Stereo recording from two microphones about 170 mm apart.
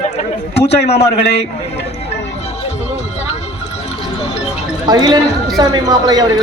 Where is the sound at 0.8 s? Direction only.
80° left.